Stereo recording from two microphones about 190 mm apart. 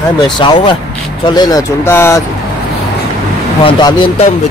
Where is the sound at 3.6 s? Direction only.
25° left (ahead or behind).